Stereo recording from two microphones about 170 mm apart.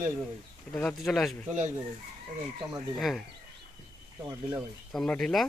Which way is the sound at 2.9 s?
Centre (ahead or behind).